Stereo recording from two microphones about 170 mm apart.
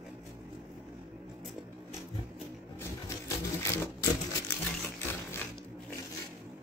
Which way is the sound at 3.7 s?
15° left (ahead or behind).